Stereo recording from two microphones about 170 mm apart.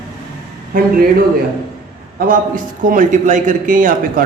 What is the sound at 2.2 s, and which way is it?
A man's voice, 55° right (ahead or behind).